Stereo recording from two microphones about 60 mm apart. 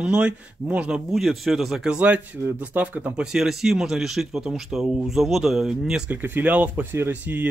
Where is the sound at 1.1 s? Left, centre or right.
Centre.